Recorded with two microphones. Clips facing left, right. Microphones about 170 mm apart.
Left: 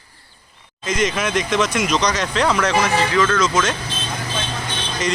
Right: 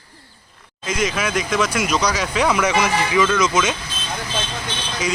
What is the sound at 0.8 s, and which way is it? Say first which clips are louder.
Speech: left 1 dB; 5° right (ahead or behind).